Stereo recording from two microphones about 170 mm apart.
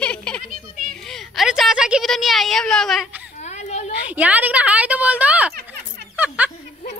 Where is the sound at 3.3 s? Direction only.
40° left (ahead or behind).